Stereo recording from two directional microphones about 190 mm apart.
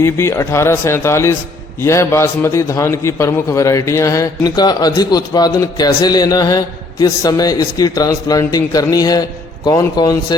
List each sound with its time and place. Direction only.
0.0 s a man's voice: 15° left (ahead or behind)